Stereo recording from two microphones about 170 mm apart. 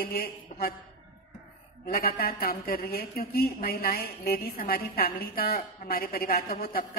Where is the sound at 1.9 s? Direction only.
60° left (ahead or behind).